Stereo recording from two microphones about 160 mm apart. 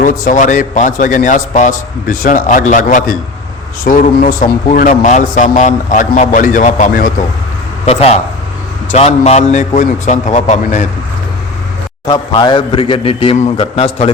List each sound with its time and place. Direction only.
0.0 s speech: 55° left (ahead or behind)
8.9 s a man's voice: 40° left (ahead or behind)
12.0 s a man's voice: 25° left (ahead or behind)